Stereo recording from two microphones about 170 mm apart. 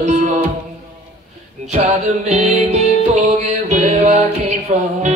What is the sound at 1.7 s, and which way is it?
Music, 40° right (ahead or behind).